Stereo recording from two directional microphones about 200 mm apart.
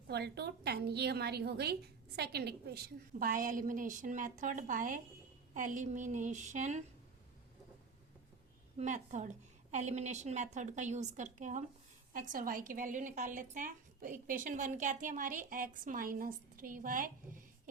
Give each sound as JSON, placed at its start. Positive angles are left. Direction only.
{"t": 0.1, "sound": "a woman's voice", "side_deg": -55}
{"t": 8.8, "sound": "a woman's voice", "side_deg": -35}